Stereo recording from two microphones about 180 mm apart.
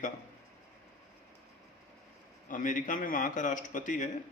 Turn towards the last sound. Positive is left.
turn(degrees=45)  # may be behind; listen again after turning